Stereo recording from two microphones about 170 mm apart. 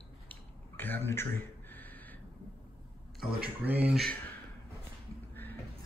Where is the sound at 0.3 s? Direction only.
10° left (ahead or behind).